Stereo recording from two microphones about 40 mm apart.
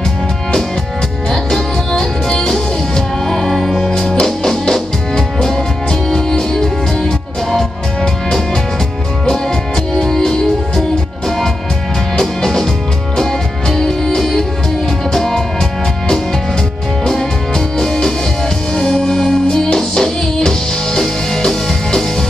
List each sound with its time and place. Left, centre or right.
1.3 s music: centre
9.9 s music: centre
12.2 s music: centre
17.0 s music: centre